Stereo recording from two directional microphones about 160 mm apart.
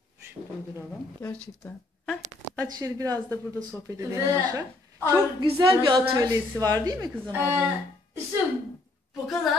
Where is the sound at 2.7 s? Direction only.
20° right (ahead or behind).